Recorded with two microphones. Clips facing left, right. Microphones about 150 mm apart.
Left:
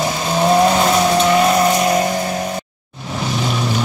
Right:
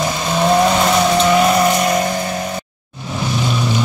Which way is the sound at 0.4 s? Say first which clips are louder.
Left 1 dB; 5° left (ahead or behind).